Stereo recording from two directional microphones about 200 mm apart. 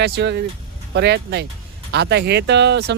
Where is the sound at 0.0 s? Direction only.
60° right (ahead or behind).